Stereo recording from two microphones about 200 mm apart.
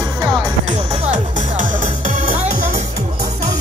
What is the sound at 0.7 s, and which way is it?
Music, 40° right (ahead or behind).